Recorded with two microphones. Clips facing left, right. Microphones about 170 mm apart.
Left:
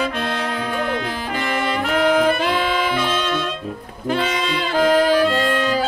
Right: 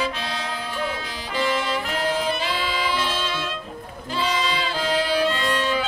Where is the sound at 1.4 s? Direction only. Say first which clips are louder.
Left 1 dB; 55° left (ahead or behind).